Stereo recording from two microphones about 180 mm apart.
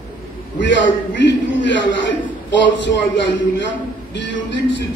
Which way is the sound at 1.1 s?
85° left.